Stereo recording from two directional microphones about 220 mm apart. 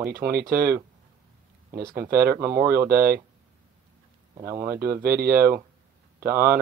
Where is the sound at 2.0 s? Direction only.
45° right (ahead or behind).